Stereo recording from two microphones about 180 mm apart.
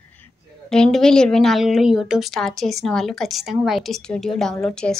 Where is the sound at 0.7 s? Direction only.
5° left (ahead or behind).